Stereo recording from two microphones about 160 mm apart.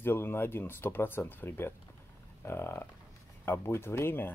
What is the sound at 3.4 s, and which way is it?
Speech, 15° left (ahead or behind).